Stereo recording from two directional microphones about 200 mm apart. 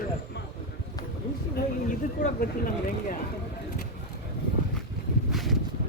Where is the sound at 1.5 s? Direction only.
45° left (ahead or behind).